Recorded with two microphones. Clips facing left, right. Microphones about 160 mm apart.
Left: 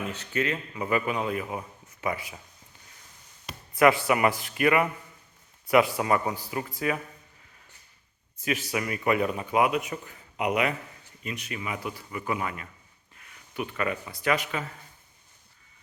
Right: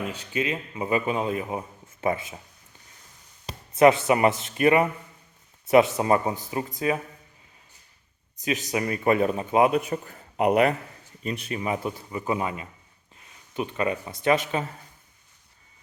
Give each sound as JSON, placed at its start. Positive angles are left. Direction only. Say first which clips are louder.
{"t": 0.1, "sound": "a man's voice", "louder": "right 1 dB", "side_deg": -15}
{"t": 3.7, "sound": "a man's voice", "louder": "right 3 dB", "side_deg": -20}
{"t": 8.4, "sound": "a man's voice", "louder": "right 2 dB", "side_deg": -20}
{"t": 8.8, "sound": "a man's voice", "louder": "right 5 dB", "side_deg": -35}